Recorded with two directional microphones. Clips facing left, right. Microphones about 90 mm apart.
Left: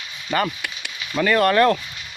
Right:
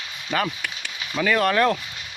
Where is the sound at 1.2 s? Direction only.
Centre (ahead or behind).